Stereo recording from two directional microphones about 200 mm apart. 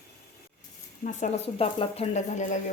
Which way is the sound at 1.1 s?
40° left (ahead or behind).